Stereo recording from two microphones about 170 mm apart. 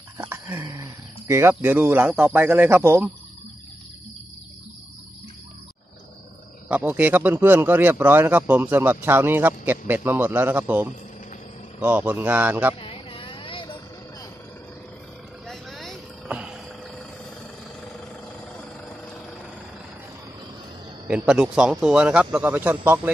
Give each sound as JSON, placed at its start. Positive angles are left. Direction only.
{"t": 0.2, "sound": "a sound", "side_deg": -15}
{"t": 0.7, "sound": "speech", "side_deg": -20}
{"t": 6.7, "sound": "speech", "side_deg": -10}
{"t": 12.8, "sound": "a sound", "side_deg": 30}
{"t": 15.4, "sound": "vehicle", "side_deg": 0}
{"t": 21.1, "sound": "a man's voice", "side_deg": -5}